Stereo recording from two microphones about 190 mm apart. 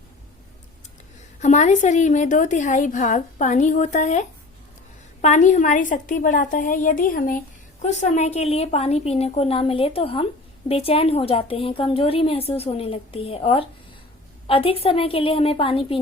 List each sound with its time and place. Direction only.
1.4 s a woman's voice: 35° left (ahead or behind)